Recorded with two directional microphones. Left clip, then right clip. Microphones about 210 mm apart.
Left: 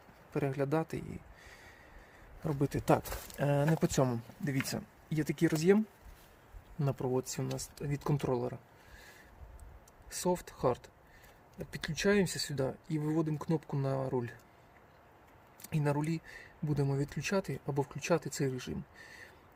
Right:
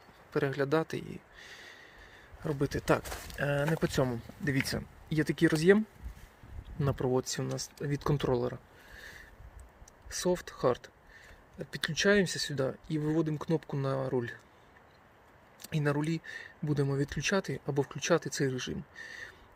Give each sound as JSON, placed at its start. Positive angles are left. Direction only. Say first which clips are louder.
{"t": 0.3, "sound": "speech", "louder": "right 4 dB", "side_deg": 5}
{"t": 4.4, "sound": "speech", "louder": "right 5 dB", "side_deg": 0}
{"t": 9.0, "sound": "a sound", "louder": "right 7 dB", "side_deg": 0}
{"t": 10.1, "sound": "speech", "louder": "right 2 dB", "side_deg": 0}
{"t": 15.6, "sound": "speech", "louder": "right 2 dB", "side_deg": -5}